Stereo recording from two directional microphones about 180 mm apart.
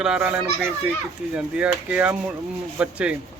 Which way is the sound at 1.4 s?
5° right (ahead or behind).